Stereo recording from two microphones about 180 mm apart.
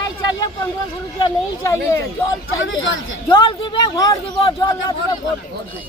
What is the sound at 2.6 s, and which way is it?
Speech, 90° left.